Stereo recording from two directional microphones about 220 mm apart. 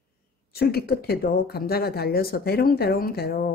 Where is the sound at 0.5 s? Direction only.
45° left (ahead or behind).